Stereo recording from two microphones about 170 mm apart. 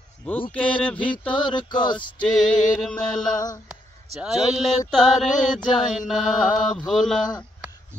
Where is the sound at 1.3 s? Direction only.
25° left (ahead or behind).